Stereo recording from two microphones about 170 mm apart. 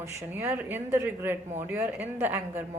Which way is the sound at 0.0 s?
15° right (ahead or behind).